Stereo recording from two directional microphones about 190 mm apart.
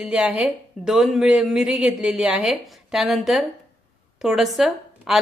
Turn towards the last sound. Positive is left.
turn(degrees=0)  # may be behind; listen again after turning